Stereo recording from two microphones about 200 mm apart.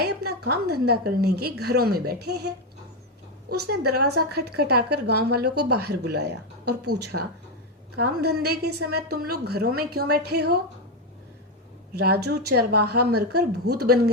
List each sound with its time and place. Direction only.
0.0 s a woman's voice: 50° right (ahead or behind)
3.7 s a woman's voice: 55° right (ahead or behind)
7.1 s speech: 90° right
7.9 s a woman's voice: 50° right (ahead or behind)
11.9 s a woman's voice: 55° right (ahead or behind)